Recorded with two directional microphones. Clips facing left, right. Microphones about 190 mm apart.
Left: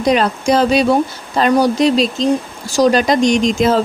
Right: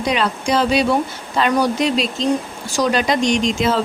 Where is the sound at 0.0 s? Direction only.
45° left (ahead or behind).